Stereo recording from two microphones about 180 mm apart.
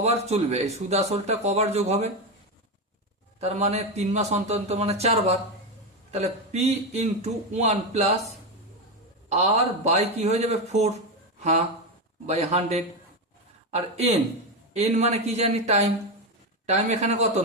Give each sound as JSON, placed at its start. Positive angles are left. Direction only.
{"t": 0.0, "sound": "a man's voice", "side_deg": -35}
{"t": 3.4, "sound": "a man's voice", "side_deg": -35}
{"t": 9.3, "sound": "a man's voice", "side_deg": -35}
{"t": 12.2, "sound": "a man's voice", "side_deg": -35}